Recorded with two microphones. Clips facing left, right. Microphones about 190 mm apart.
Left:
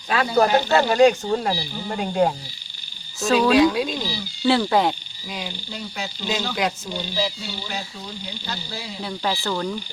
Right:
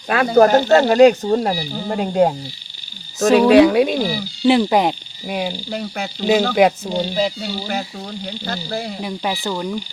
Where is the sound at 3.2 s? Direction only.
65° right (ahead or behind).